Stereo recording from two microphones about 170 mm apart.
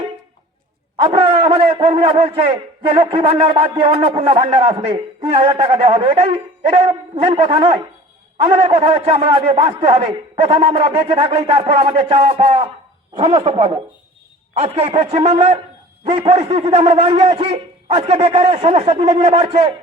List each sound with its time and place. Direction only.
0.9 s a man's voice: 30° right (ahead or behind)